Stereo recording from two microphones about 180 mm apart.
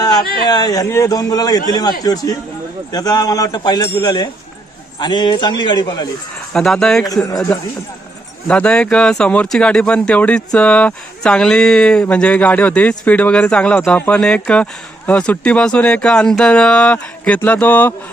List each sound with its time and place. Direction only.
0.4 s a man's voice: 20° left (ahead or behind)
6.5 s speech: 5° left (ahead or behind)